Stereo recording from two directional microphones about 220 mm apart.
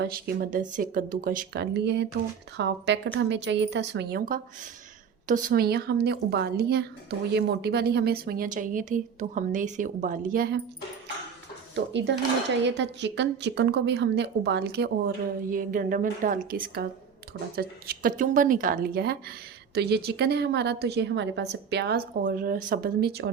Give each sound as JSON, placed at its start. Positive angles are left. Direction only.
{"t": 0.0, "sound": "a woman's voice", "side_deg": -45}
{"t": 11.7, "sound": "a woman's voice", "side_deg": -50}